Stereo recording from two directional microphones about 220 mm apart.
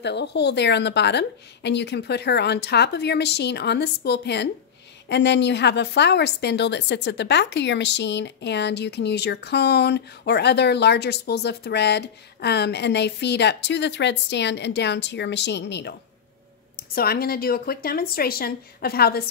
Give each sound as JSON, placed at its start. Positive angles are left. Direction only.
{"t": 0.0, "sound": "a woman's voice", "side_deg": 50}
{"t": 16.9, "sound": "a woman's voice", "side_deg": 45}